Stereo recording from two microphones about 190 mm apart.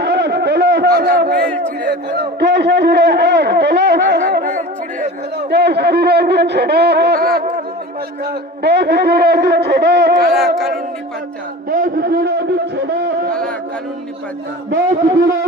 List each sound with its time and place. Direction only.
0.0 s a sound: 65° right (ahead or behind)
2.0 s a man's voice: 60° right (ahead or behind)
8.6 s speech: 60° right (ahead or behind)
10.3 s speech: centre (ahead or behind)
11.7 s a man's voice: 45° right (ahead or behind)